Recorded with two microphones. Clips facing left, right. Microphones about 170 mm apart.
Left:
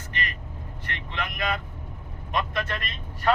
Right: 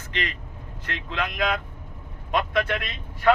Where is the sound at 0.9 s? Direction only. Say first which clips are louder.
Right 4 dB; 90° right.